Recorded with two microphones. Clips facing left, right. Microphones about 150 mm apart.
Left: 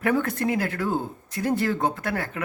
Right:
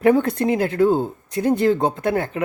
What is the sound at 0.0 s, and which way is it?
Speech, 20° right (ahead or behind).